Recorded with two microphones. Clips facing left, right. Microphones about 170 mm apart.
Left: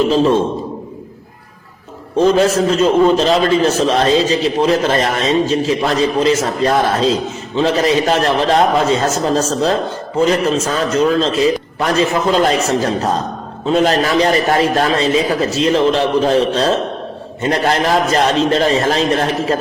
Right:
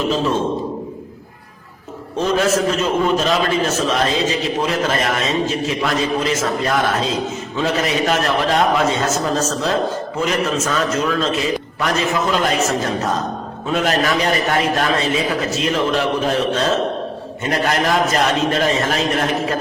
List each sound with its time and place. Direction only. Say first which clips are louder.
2.1 s a man's voice: left 5 dB; 30° left (ahead or behind)